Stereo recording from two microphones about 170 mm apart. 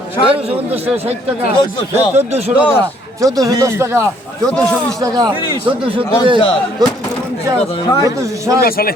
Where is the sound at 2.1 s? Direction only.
40° right (ahead or behind).